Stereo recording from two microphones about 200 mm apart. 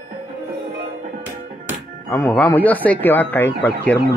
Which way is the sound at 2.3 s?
5° left (ahead or behind).